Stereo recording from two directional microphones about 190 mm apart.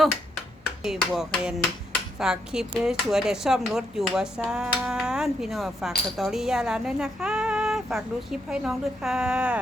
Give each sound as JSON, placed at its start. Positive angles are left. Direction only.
{"t": 0.8, "sound": "speech", "side_deg": 0}